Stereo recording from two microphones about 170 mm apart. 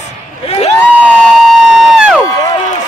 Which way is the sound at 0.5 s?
40° left (ahead or behind).